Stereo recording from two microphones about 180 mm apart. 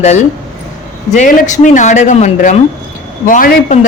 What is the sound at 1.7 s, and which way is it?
A woman's voice, 40° left (ahead or behind).